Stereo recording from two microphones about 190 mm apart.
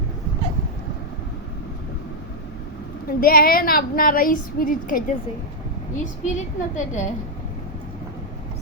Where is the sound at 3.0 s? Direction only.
50° left (ahead or behind).